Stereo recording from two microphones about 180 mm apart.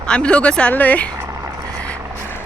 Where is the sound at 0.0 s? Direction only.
5° left (ahead or behind).